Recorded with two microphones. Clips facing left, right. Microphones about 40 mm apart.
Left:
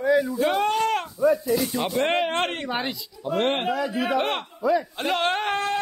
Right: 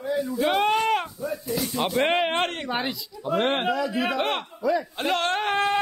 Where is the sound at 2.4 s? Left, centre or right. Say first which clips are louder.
Even; centre.